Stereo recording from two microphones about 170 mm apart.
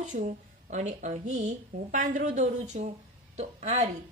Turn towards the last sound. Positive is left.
turn(degrees=-40)  # may be behind; listen again after turning